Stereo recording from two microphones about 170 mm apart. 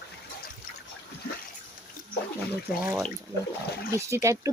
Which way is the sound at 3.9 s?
15° right (ahead or behind).